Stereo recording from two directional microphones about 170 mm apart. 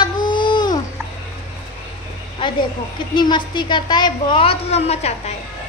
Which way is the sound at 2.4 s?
30° left (ahead or behind).